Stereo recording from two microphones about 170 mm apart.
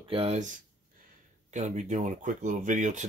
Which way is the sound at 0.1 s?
40° right (ahead or behind).